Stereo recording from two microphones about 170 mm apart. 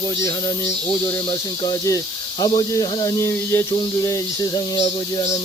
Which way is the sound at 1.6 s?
20° left (ahead or behind).